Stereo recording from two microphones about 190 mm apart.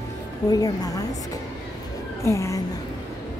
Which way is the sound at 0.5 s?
20° left (ahead or behind).